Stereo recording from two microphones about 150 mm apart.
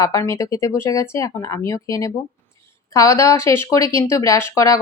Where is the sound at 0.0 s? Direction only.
20° left (ahead or behind).